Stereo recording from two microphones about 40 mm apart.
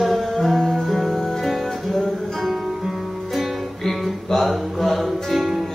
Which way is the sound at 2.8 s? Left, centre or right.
Centre.